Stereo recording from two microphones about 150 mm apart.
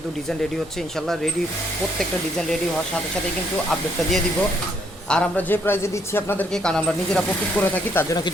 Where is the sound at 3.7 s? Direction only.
5° left (ahead or behind).